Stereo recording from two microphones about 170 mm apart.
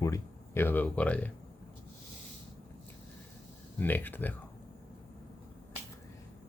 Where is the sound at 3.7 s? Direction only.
10° left (ahead or behind).